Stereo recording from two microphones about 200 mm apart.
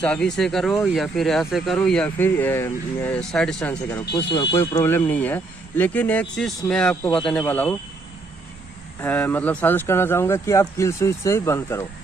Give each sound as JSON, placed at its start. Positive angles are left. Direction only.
{"t": 0.0, "sound": "speech", "side_deg": 5}
{"t": 4.1, "sound": "speech", "side_deg": 20}
{"t": 7.1, "sound": "speech", "side_deg": 25}
{"t": 7.3, "sound": "speech", "side_deg": 5}
{"t": 9.0, "sound": "speech", "side_deg": 10}